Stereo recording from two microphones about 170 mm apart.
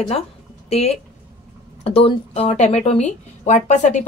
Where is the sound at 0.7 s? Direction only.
35° left (ahead or behind).